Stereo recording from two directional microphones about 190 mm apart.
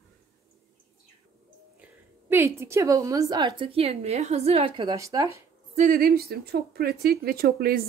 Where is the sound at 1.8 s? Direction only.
10° right (ahead or behind).